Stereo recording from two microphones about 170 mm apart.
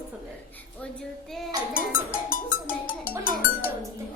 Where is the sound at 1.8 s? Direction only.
55° left (ahead or behind).